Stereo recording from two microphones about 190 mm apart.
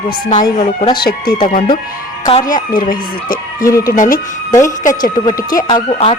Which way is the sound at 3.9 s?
45° left (ahead or behind).